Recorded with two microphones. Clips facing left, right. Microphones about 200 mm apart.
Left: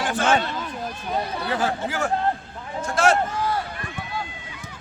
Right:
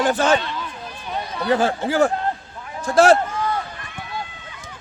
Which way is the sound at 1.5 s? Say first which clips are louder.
Right 7 dB; 30° right (ahead or behind).